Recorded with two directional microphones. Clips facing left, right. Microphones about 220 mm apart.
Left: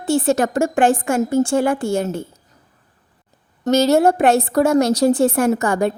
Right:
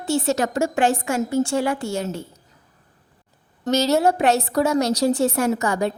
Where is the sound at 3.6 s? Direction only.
50° left (ahead or behind).